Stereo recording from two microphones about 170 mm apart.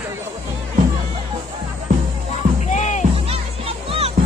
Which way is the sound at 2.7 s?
45° left (ahead or behind).